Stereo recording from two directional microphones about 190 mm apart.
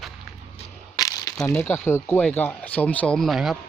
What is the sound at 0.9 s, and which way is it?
Crumpling, 20° left (ahead or behind).